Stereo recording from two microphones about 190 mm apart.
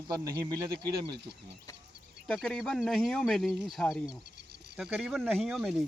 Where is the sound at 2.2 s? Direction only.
5° left (ahead or behind).